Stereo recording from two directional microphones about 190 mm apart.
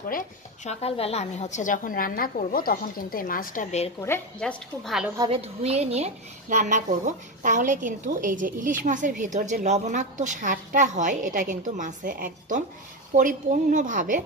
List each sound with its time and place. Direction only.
0.7 s a woman's voice: 30° left (ahead or behind)
4.0 s a woman's voice: 10° left (ahead or behind)
5.3 s a woman's voice: 35° right (ahead or behind)